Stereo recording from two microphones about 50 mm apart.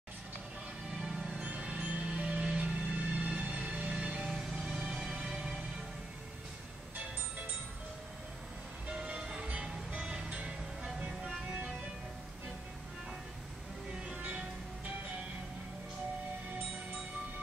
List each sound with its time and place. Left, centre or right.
1.0 s music: centre
1.4 s music: right
4.3 s music: centre
8.8 s music: right
9.2 s music: centre
11.1 s music: centre
14.1 s music: right